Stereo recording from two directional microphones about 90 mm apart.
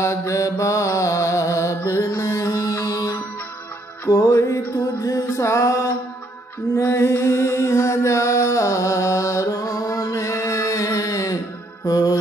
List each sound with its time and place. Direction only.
0.0 s mantra: 35° left (ahead or behind)
2.1 s music: 35° left (ahead or behind)